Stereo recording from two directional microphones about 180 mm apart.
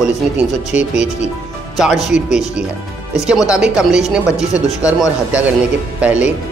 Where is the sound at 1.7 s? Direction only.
Centre (ahead or behind).